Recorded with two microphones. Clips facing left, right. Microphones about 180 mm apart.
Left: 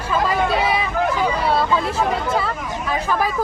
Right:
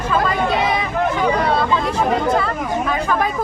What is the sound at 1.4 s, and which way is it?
Speech, 5° left (ahead or behind).